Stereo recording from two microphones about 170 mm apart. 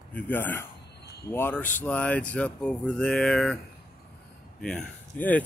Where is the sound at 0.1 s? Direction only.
10° left (ahead or behind).